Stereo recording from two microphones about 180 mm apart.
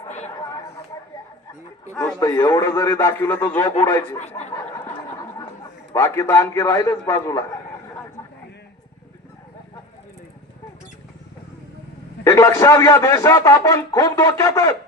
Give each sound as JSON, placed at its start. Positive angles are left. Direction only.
{"t": 2.1, "sound": "a man's voice", "side_deg": 15}
{"t": 4.2, "sound": "speech", "side_deg": 40}
{"t": 5.9, "sound": "a man's voice", "side_deg": 15}
{"t": 12.2, "sound": "a man's voice", "side_deg": 15}